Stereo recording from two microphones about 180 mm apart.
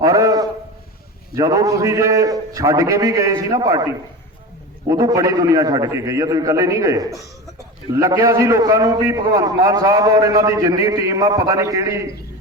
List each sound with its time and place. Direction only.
0.0 s a sound: 20° right (ahead or behind)
1.4 s a man's voice: 20° right (ahead or behind)
4.9 s a man's voice: 20° right (ahead or behind)